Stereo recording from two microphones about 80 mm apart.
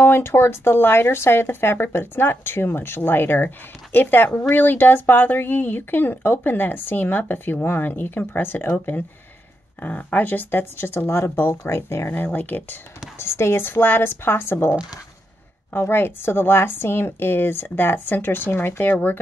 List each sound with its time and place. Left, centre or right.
0.0 s speech: left
9.8 s speech: centre